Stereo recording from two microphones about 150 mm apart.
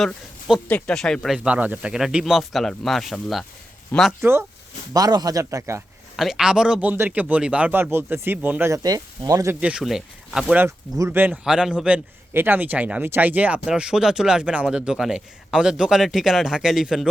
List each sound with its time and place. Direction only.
0.0 s a man's voice: centre (ahead or behind)
4.2 s speech: 15° right (ahead or behind)
6.1 s a man's voice: centre (ahead or behind); by 9.6 s 20° right (ahead or behind)
9.6 s speech: 5° right (ahead or behind)
10.7 s a man's voice: 20° right (ahead or behind); by 17.1 s 5° right (ahead or behind)